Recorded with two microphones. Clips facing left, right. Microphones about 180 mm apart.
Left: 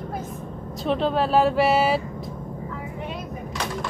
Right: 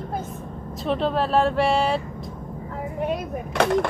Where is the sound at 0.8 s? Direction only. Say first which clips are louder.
Left 1 dB; centre (ahead or behind).